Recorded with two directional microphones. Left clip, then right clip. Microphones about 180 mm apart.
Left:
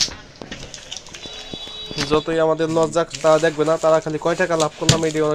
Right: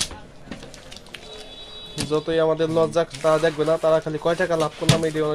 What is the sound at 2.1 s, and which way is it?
Speech, 10° left (ahead or behind).